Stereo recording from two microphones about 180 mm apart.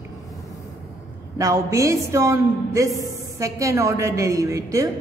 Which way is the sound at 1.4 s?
20° right (ahead or behind).